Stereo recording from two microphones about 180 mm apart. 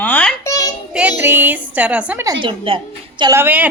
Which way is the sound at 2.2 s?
30° right (ahead or behind).